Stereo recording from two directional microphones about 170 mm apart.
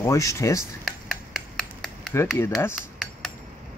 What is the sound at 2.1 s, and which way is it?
Speech, 15° left (ahead or behind).